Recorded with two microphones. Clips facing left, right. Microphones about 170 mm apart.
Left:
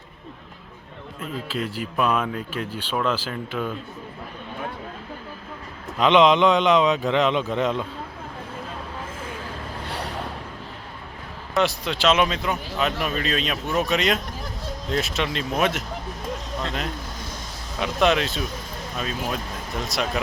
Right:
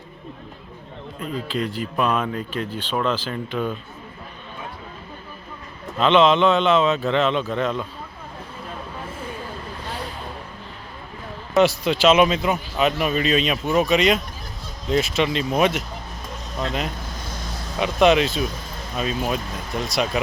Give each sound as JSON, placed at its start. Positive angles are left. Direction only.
{"t": 1.2, "sound": "speech", "side_deg": 5}
{"t": 6.0, "sound": "speech", "side_deg": 15}
{"t": 11.5, "sound": "a man's voice", "side_deg": 0}
{"t": 17.7, "sound": "a man's voice", "side_deg": 0}